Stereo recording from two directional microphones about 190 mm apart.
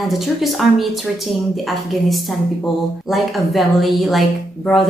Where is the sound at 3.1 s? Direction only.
Centre (ahead or behind).